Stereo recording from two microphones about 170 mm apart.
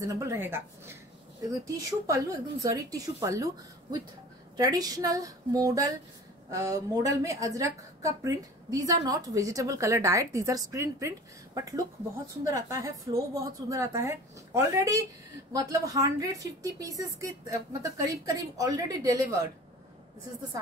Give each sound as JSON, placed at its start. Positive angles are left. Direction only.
{"t": 0.0, "sound": "a woman's voice", "side_deg": -20}